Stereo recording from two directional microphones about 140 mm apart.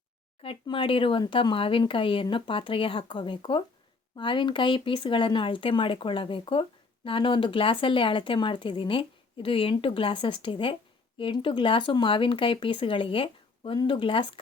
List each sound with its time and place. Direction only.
0.4 s speech: 40° left (ahead or behind)